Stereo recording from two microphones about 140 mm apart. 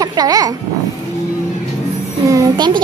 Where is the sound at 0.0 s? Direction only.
25° right (ahead or behind).